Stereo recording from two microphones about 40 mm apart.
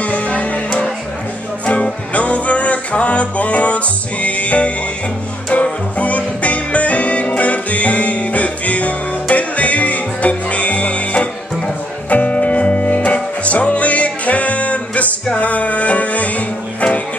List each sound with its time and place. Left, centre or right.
0.0 s music: left
1.7 s music: left